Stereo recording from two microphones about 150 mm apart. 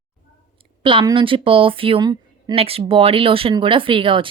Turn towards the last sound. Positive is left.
turn(degrees=-35)  # may be behind; listen again after turning